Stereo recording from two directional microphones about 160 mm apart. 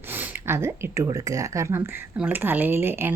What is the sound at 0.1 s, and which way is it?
A woman's voice, 15° right (ahead or behind).